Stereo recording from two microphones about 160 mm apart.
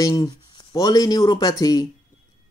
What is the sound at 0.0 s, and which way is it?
Speech, 20° left (ahead or behind).